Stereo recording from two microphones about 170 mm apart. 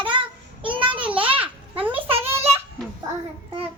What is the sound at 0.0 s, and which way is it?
Child singing, 30° right (ahead or behind).